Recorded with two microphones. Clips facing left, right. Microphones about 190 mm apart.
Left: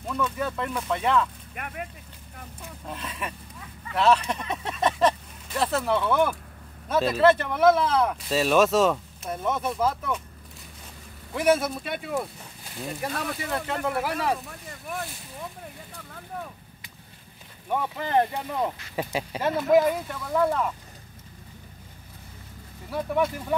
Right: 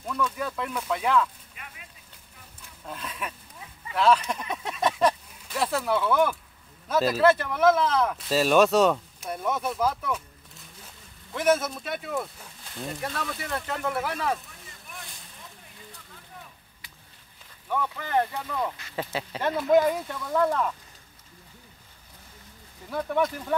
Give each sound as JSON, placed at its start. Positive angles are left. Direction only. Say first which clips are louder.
{"t": 0.0, "sound": "a sound", "louder": "left 1 dB", "side_deg": 10}
{"t": 0.5, "sound": "speech", "louder": "left 1 dB", "side_deg": 0}
{"t": 1.5, "sound": "speech", "louder": "left 12 dB", "side_deg": 60}
{"t": 2.9, "sound": "speech", "louder": "left 1 dB", "side_deg": 5}
{"t": 4.1, "sound": "a sound", "louder": "even", "side_deg": -5}
{"t": 6.9, "sound": "speech", "louder": "left 1 dB", "side_deg": 0}
{"t": 11.3, "sound": "speech", "louder": "left 1 dB", "side_deg": 10}
{"t": 14.4, "sound": "boat", "louder": "left 9 dB", "side_deg": 60}
{"t": 16.1, "sound": "vehicle", "louder": "left 10 dB", "side_deg": 60}
{"t": 17.6, "sound": "speech", "louder": "left 2 dB", "side_deg": 25}
{"t": 22.8, "sound": "speech", "louder": "left 1 dB", "side_deg": 5}